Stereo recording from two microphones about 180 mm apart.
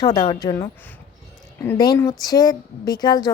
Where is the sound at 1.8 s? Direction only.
20° left (ahead or behind).